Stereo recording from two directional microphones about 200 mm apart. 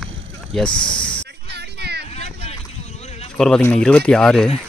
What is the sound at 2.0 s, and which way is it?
Boat, 35° left (ahead or behind).